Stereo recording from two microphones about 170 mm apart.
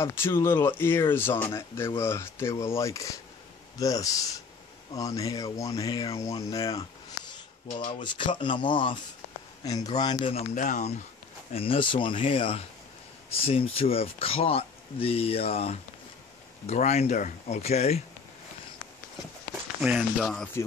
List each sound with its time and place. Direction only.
0.0 s speech: 15° left (ahead or behind)
7.9 s speech: 30° left (ahead or behind)
9.9 s speech: 25° left (ahead or behind)
10.3 s speech: 45° left (ahead or behind)
11.5 s speech: 35° left (ahead or behind)
20.0 s speech: 5° left (ahead or behind)